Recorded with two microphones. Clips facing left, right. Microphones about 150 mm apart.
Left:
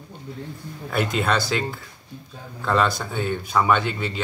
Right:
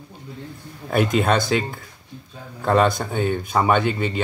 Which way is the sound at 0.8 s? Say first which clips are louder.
Right 4 dB; 45° right (ahead or behind).